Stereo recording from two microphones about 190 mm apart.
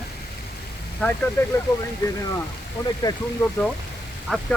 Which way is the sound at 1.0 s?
5° left (ahead or behind).